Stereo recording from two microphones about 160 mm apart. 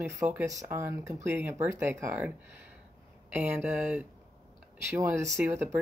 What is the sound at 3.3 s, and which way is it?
Speech, 10° right (ahead or behind).